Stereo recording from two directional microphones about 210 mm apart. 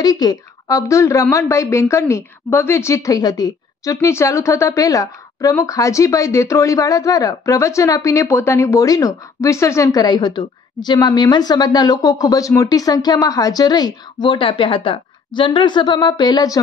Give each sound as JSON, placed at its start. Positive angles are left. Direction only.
{"t": 0.0, "sound": "a woman's voice", "side_deg": 20}